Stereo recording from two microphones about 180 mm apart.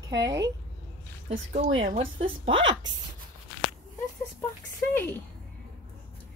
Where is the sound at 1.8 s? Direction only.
50° right (ahead or behind).